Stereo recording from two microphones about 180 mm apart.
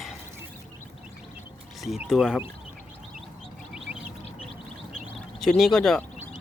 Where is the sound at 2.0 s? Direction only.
5° right (ahead or behind).